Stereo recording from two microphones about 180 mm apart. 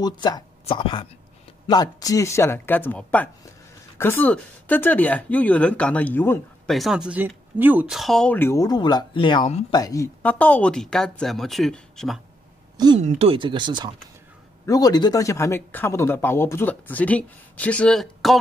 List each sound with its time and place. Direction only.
0.0 s speech: 25° left (ahead or behind)
6.7 s speech: centre (ahead or behind); by 9.4 s 25° left (ahead or behind)
9.4 s speech: 35° left (ahead or behind)
9.7 s speech: 20° left (ahead or behind); by 12.2 s centre (ahead or behind)
13.0 s speech: 30° right (ahead or behind)
14.7 s speech: 20° left (ahead or behind); by 18.4 s centre (ahead or behind)